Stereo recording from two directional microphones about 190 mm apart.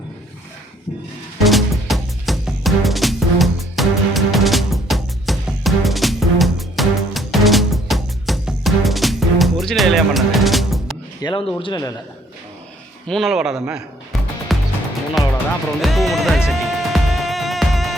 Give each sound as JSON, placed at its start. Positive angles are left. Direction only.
{"t": 1.5, "sound": "music", "side_deg": 0}
{"t": 11.2, "sound": "a sound", "side_deg": 20}
{"t": 11.6, "sound": "a man's voice", "side_deg": 20}
{"t": 13.1, "sound": "music", "side_deg": 0}
{"t": 15.2, "sound": "speech", "side_deg": 0}
{"t": 15.8, "sound": "music", "side_deg": 0}